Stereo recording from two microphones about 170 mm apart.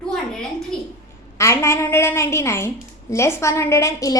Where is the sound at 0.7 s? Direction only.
5° left (ahead or behind).